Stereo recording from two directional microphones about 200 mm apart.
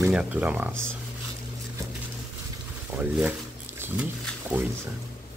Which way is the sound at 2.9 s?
10° right (ahead or behind).